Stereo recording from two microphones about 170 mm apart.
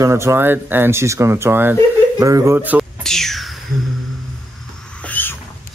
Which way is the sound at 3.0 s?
Centre (ahead or behind).